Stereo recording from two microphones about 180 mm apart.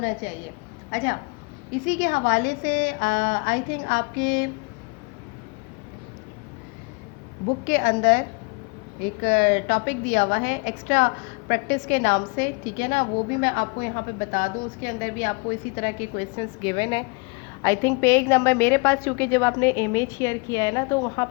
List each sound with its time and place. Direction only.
0.2 s a woman's voice: 45° left (ahead or behind)
7.7 s a woman's voice: 45° left (ahead or behind)
9.2 s a woman's voice: 50° left (ahead or behind); by 17.1 s 30° left (ahead or behind)
17.6 s a woman's voice: 15° left (ahead or behind)